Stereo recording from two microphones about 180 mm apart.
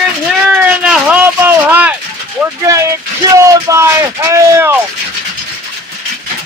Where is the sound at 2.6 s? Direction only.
15° right (ahead or behind).